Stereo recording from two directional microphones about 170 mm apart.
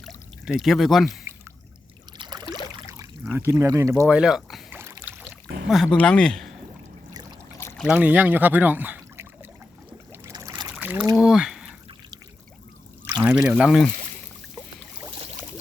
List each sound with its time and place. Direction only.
0.0 s a sound: centre (ahead or behind)
2.1 s boat: 25° right (ahead or behind)
3.2 s speech: 10° right (ahead or behind)
4.0 s speech: 5° right (ahead or behind)
4.7 s boat: 15° right (ahead or behind)
5.6 s speech: centre (ahead or behind)
7.9 s speech: 10° right (ahead or behind)
10.1 s boat: 20° right (ahead or behind)
10.8 s boat: 10° right (ahead or behind)
11.1 s speech: 5° right (ahead or behind)
13.2 s speech: 5° right (ahead or behind)